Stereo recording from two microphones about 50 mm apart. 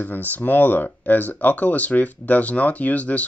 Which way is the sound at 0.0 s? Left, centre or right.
Left.